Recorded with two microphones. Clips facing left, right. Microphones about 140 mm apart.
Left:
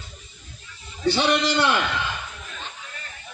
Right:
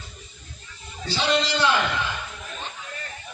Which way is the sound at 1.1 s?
60° left (ahead or behind).